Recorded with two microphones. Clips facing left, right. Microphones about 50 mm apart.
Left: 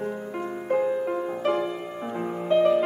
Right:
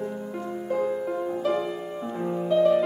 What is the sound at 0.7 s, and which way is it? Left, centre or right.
Music, left.